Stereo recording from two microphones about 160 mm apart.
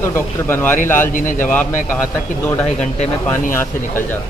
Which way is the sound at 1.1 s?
55° left (ahead or behind).